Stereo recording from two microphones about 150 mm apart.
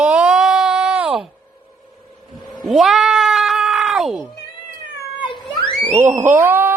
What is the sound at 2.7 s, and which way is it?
Cat, centre (ahead or behind).